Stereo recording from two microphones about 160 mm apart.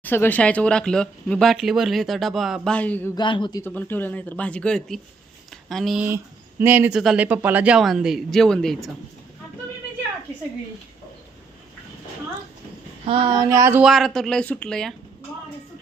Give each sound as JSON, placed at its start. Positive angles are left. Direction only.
{"t": 0.0, "sound": "speech", "side_deg": 10}
{"t": 3.2, "sound": "speech", "side_deg": 30}
{"t": 3.6, "sound": "speech", "side_deg": 10}
{"t": 6.6, "sound": "speech", "side_deg": -15}
{"t": 13.1, "sound": "a sound", "side_deg": -30}
{"t": 13.8, "sound": "speech", "side_deg": 0}